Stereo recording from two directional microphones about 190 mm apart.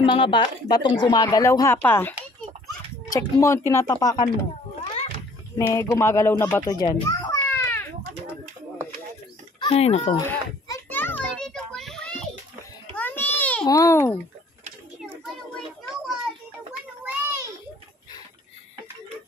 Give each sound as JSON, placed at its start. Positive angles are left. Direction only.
{"t": 0.0, "sound": "speech", "side_deg": 25}
{"t": 5.6, "sound": "a child's voice", "side_deg": 15}
{"t": 9.6, "sound": "speech", "side_deg": 30}
{"t": 10.1, "sound": "children playing", "side_deg": 15}
{"t": 12.9, "sound": "babbling", "side_deg": 10}
{"t": 13.7, "sound": "speech", "side_deg": 15}
{"t": 17.0, "sound": "a sound", "side_deg": -10}